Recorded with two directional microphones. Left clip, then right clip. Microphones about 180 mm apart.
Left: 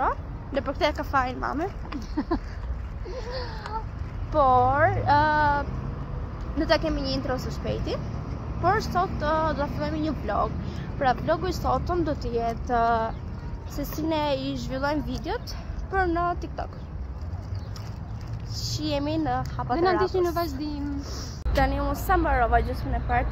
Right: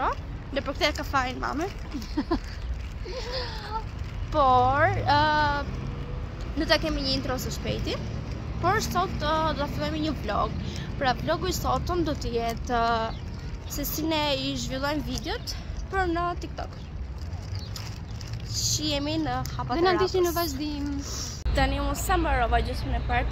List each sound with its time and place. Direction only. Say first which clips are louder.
0.6 s speech: left 1 dB; 5° left (ahead or behind)
1.6 s speech: left 1 dB; 15° right (ahead or behind); by 16.6 s 5° left (ahead or behind)
18.6 s a child's voice: right 1 dB; centre (ahead or behind)
19.7 s speech: even; 15° right (ahead or behind)
21.0 s a woman's voice: right 2 dB; 5° right (ahead or behind)